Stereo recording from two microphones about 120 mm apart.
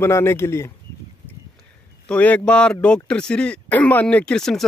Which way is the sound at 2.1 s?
10° left (ahead or behind).